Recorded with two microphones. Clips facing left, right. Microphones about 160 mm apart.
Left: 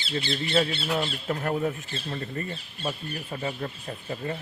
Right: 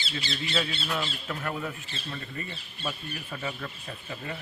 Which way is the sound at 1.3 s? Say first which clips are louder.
Left 9 dB; 35° left (ahead or behind).